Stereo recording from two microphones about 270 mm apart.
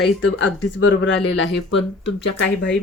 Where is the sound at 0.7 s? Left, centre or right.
Left.